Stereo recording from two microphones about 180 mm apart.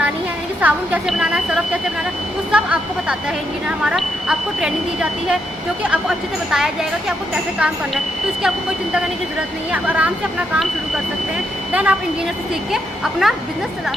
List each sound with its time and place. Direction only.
0.6 s speech: 5° right (ahead or behind)
11.7 s speech: 5° right (ahead or behind)